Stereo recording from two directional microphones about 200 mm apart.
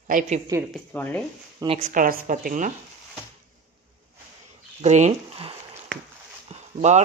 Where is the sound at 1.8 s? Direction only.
40° right (ahead or behind).